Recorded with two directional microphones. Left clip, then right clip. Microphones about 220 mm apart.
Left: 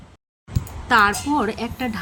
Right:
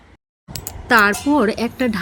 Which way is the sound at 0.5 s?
50° right (ahead or behind).